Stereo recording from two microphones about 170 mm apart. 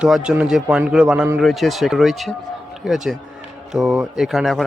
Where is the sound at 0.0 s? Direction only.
5° right (ahead or behind).